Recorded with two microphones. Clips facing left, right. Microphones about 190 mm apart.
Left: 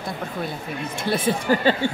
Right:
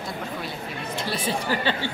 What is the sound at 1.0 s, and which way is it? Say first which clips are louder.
Speech: left 5 dB; 50° left (ahead or behind).